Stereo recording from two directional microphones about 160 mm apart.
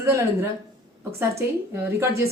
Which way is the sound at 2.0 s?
20° right (ahead or behind).